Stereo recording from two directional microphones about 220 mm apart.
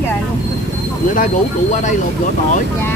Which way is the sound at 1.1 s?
35° left (ahead or behind).